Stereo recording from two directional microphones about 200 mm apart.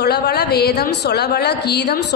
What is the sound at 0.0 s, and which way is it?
A woman's voice, 55° left (ahead or behind).